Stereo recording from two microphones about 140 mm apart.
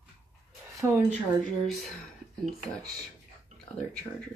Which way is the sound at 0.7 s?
15° right (ahead or behind).